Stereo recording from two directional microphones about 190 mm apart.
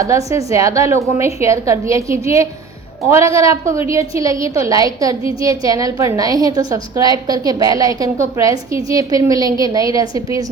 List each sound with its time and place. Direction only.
0.3 s a woman's voice: 15° right (ahead or behind)